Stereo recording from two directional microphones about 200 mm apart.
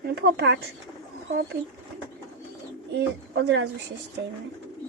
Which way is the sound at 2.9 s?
60° right (ahead or behind).